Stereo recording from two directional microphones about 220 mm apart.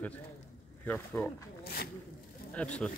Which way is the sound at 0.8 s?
5° left (ahead or behind).